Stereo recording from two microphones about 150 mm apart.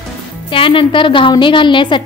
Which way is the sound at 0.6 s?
35° left (ahead or behind).